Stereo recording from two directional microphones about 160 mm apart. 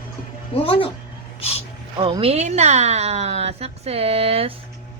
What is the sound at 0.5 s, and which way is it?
Speech, 35° left (ahead or behind).